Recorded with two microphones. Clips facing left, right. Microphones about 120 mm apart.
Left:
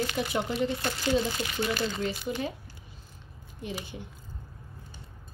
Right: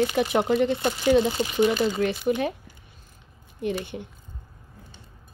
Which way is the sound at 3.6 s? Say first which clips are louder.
Right 10 dB; 60° right (ahead or behind).